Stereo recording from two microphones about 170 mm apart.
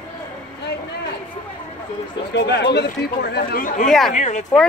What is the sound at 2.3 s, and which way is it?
Speech, 90° left.